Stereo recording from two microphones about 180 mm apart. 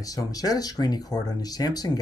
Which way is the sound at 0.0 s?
20° left (ahead or behind).